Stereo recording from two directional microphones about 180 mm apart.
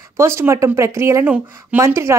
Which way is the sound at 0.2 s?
15° right (ahead or behind).